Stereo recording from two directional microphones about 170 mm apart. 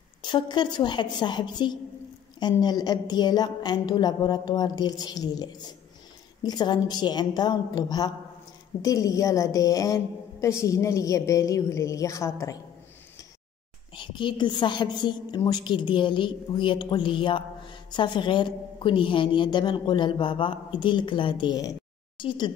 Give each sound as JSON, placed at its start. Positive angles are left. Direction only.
{"t": 0.2, "sound": "a woman's voice", "side_deg": 25}
{"t": 13.9, "sound": "a woman's voice", "side_deg": 30}